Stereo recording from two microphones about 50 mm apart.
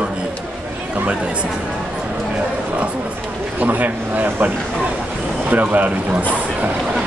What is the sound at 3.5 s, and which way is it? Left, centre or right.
Speech, right.